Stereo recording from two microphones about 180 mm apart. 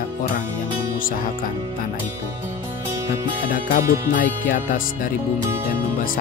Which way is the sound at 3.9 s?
50° left (ahead or behind).